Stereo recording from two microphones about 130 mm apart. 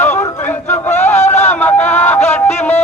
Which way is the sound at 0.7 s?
15° left (ahead or behind).